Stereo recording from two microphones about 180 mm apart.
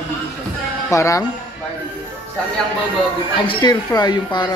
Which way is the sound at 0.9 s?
15° left (ahead or behind).